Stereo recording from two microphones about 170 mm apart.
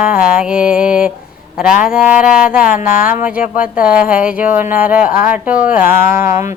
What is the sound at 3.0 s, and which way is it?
Speech, 55° left (ahead or behind).